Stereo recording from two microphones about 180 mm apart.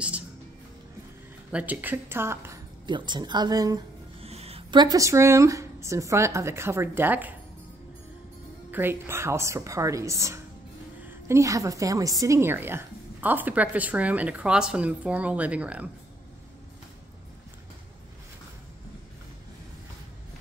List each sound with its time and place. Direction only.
1.5 s a woman's voice: 10° right (ahead or behind)
2.9 s a woman's voice: 25° right (ahead or behind)
4.2 s speech: 35° right (ahead or behind); by 7.3 s 10° right (ahead or behind)
8.7 s a woman's voice: 10° right (ahead or behind)